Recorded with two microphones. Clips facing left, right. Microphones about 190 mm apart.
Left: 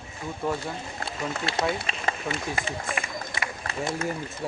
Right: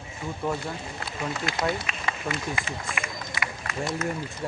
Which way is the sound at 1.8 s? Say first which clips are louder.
Left 1 dB; 35° left (ahead or behind).